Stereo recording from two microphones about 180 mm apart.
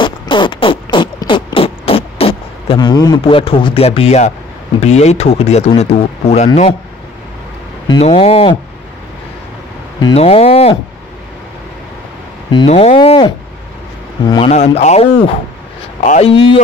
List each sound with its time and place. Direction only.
0.0 s a sound: 25° left (ahead or behind)
4.7 s speech: 35° left (ahead or behind)
8.0 s speech: 35° left (ahead or behind)
9.9 s speech: 30° left (ahead or behind)
12.6 s speech: 35° left (ahead or behind)
14.5 s speech: 40° left (ahead or behind)